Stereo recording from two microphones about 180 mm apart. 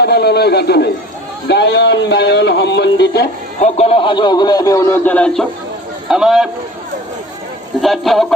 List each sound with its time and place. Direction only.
0.0 s a man's voice: 65° left (ahead or behind)
1.5 s a sound: 70° left (ahead or behind)
3.6 s a man's voice: 35° left (ahead or behind); by 6.5 s 5° right (ahead or behind)
7.8 s speech: centre (ahead or behind)